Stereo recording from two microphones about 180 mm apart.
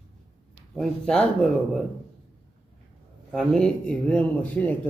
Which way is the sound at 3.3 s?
5° left (ahead or behind).